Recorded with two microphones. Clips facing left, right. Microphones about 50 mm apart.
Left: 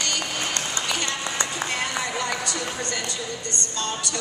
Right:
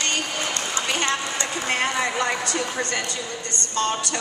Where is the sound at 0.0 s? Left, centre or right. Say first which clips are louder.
Right 2 dB; right.